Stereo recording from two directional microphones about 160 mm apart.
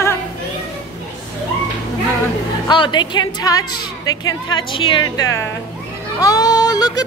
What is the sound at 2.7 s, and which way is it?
A woman's voice, 30° left (ahead or behind).